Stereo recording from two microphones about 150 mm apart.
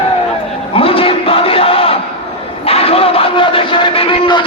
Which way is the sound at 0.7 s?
40° left (ahead or behind).